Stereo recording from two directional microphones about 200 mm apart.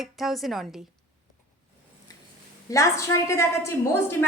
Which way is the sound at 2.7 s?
15° left (ahead or behind).